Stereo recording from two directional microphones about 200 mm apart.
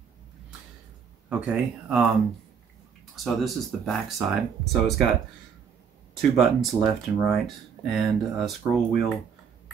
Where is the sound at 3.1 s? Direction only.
Centre (ahead or behind).